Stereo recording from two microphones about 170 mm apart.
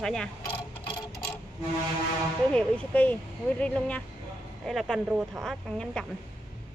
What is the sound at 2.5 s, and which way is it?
Speech, 5° left (ahead or behind).